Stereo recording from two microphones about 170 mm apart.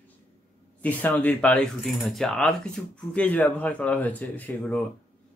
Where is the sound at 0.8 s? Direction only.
10° left (ahead or behind).